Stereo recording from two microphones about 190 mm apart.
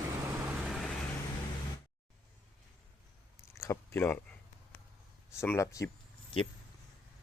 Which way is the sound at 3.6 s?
15° left (ahead or behind).